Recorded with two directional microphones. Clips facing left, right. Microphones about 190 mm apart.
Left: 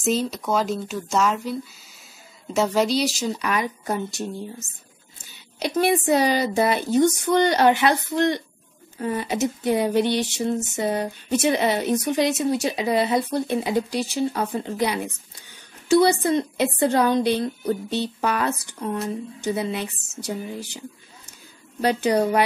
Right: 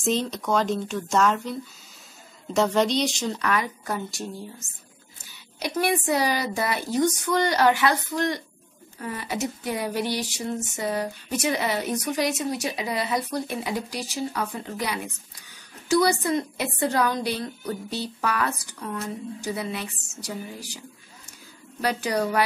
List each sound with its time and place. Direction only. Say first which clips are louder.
0.0 s speech: left 2 dB; 5° left (ahead or behind); by 4.3 s 20° left (ahead or behind)
5.6 s speech: left 4 dB; 25° left (ahead or behind)
21.8 s speech: left 5 dB; 25° left (ahead or behind)